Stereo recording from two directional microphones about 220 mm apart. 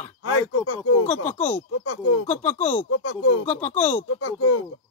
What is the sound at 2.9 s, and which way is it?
Speech, 65° left (ahead or behind).